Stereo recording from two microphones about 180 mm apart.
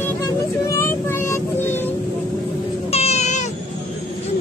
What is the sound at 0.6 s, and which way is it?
Music, 15° left (ahead or behind).